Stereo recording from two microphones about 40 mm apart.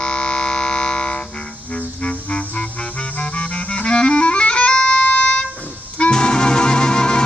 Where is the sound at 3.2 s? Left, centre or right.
Left.